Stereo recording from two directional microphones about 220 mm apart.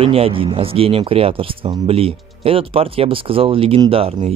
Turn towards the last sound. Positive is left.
turn(degrees=-25)  # may be behind; listen again after turning